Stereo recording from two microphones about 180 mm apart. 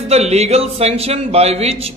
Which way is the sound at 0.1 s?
35° right (ahead or behind).